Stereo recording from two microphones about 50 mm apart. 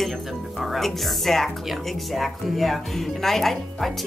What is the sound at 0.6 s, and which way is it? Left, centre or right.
Speech, centre.